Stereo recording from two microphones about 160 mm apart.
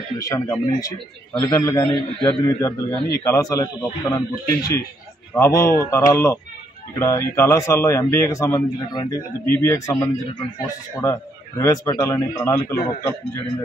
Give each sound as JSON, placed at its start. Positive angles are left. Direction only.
{"t": 0.2, "sound": "a man's voice", "side_deg": 20}